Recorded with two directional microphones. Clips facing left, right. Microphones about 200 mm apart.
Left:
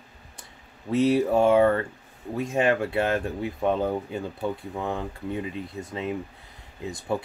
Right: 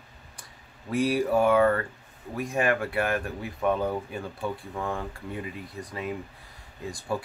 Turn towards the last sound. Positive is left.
turn(degrees=20)  # may be behind; listen again after turning